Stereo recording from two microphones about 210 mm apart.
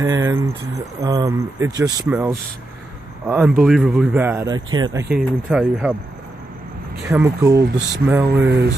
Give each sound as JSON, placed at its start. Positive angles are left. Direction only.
{"t": 0.0, "sound": "speech", "side_deg": -15}
{"t": 3.3, "sound": "speech", "side_deg": -5}
{"t": 5.5, "sound": "speech", "side_deg": -5}
{"t": 7.1, "sound": "speech", "side_deg": -15}
{"t": 8.3, "sound": "speech", "side_deg": -50}